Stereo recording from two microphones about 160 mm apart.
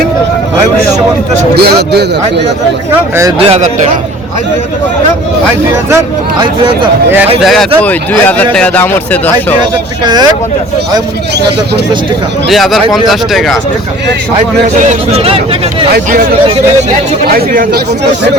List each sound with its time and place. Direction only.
1.5 s speech: 85° right
3.3 s speech: 40° right (ahead or behind)
7.4 s speech: centre (ahead or behind)
10.0 s speech: 25° right (ahead or behind)
12.5 s speech: centre (ahead or behind)
14.3 s speech: 45° right (ahead or behind)
17.2 s speech: 65° right (ahead or behind)